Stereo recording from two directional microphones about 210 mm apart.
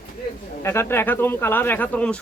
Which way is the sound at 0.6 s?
10° left (ahead or behind).